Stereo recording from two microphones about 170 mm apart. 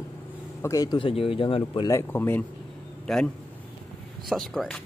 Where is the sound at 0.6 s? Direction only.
20° left (ahead or behind).